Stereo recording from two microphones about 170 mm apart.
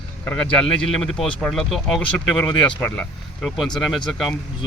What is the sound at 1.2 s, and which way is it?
Speech, 5° left (ahead or behind).